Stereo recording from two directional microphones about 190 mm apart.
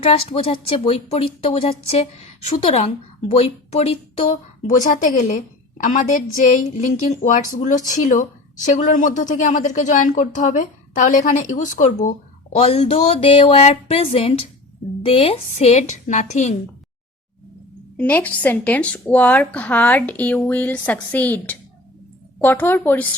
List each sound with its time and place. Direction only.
0.0 s a woman's voice: 30° left (ahead or behind)
17.9 s speech: 10° left (ahead or behind)